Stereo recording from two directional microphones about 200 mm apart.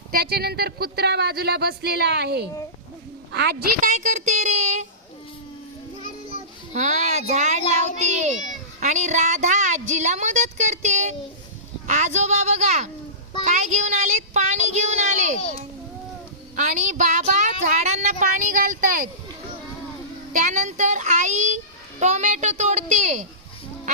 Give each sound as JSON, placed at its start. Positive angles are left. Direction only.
{"t": 0.1, "sound": "speech", "side_deg": -50}
{"t": 6.7, "sound": "a child's voice", "side_deg": -35}
{"t": 16.6, "sound": "speech", "side_deg": -40}
{"t": 20.3, "sound": "speech", "side_deg": -40}